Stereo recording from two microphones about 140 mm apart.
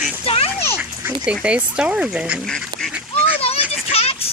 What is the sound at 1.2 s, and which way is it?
Speech, 5° right (ahead or behind).